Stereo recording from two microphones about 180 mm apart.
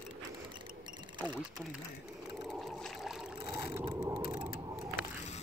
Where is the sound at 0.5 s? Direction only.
25° right (ahead or behind).